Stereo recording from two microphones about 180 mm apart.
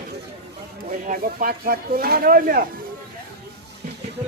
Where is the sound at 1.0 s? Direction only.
50° right (ahead or behind).